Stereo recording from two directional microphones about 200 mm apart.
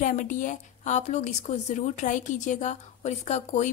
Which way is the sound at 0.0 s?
40° left (ahead or behind).